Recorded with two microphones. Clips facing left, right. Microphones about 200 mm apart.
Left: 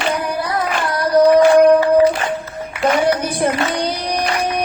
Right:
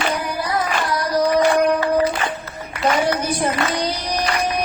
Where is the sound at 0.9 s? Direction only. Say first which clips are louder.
Left 9 dB; 55° left (ahead or behind).